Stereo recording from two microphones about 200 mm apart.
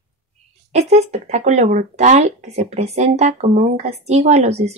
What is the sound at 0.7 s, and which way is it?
Speech, 35° right (ahead or behind).